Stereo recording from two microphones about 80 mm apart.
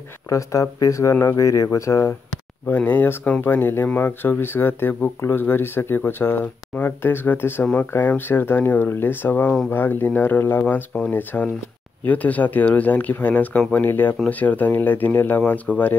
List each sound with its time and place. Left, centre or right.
0.3 s speech: left
2.7 s speech: left
7.6 s speech: centre